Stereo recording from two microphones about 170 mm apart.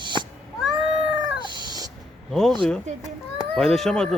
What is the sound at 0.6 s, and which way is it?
Cat, 5° right (ahead or behind).